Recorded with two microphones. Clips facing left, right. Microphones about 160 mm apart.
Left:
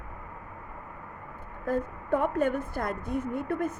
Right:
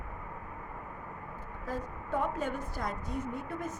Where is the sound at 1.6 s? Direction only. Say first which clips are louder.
Left 9 dB; 55° left (ahead or behind).